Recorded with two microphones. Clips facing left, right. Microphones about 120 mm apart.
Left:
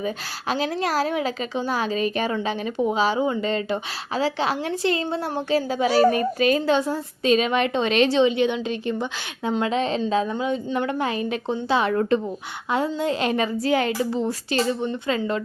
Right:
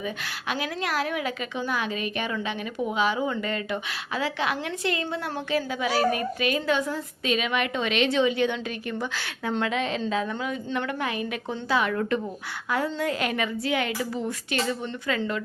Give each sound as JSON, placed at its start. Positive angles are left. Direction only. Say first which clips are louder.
{"t": 0.0, "sound": "a woman's voice", "louder": "left 4 dB", "side_deg": 35}
{"t": 10.3, "sound": "a woman's voice", "louder": "left 5 dB", "side_deg": 20}